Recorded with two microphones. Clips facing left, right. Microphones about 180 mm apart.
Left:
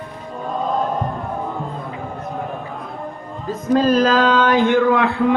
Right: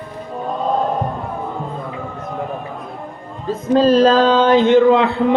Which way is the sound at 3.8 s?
30° right (ahead or behind).